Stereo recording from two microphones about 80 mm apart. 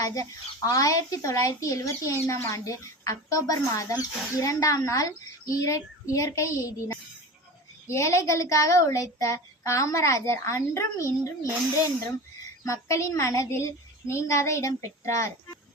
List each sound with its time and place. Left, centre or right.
0.0 s speech: left
12.6 s speech: left